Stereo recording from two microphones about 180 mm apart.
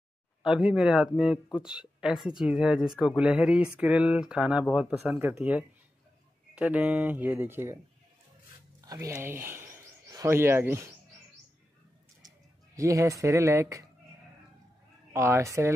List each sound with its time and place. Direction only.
0.4 s speech: 5° right (ahead or behind)
8.8 s speech: 15° right (ahead or behind)
12.7 s speech: 15° right (ahead or behind)
15.1 s speech: 15° right (ahead or behind)